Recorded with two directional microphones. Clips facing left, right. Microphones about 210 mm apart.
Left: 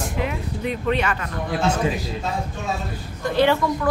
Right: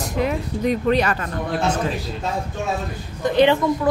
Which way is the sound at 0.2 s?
40° right (ahead or behind).